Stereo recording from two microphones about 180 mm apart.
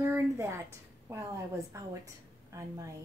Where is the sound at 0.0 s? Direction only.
15° right (ahead or behind).